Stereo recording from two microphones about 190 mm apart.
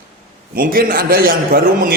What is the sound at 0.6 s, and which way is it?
A man's voice, 50° right (ahead or behind).